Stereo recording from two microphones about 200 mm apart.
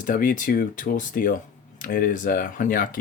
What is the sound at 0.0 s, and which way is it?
Speech, 40° left (ahead or behind).